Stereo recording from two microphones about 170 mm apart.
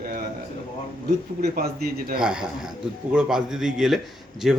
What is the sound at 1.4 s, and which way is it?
Speech, 60° right (ahead or behind).